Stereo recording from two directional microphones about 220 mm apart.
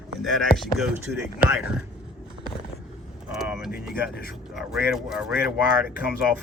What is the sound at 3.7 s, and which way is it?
Speech, 45° left (ahead or behind).